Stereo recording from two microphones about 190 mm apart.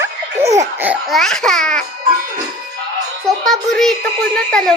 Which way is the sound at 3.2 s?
Centre (ahead or behind).